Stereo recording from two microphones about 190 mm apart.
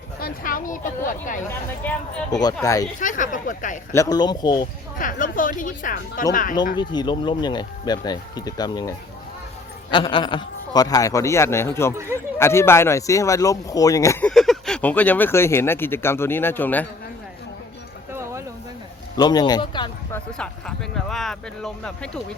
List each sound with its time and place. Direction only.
0.2 s a woman's voice: 50° left (ahead or behind)
1.5 s speech: 10° left (ahead or behind)
3.0 s a woman's voice: 45° left (ahead or behind)
3.9 s speech: 20° left (ahead or behind)
4.9 s a woman's voice: 45° left (ahead or behind)
6.7 s speech: 25° left (ahead or behind)
11.9 s speech: 15° right (ahead or behind)
12.4 s speech: 15° left (ahead or behind)
14.3 s speech: centre (ahead or behind)
18.1 s music: 15° right (ahead or behind)
19.1 s speech: 20° left (ahead or behind)
20.1 s speech: 5° left (ahead or behind)